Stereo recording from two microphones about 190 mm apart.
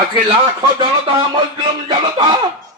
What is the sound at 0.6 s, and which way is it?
Speech, 25° right (ahead or behind).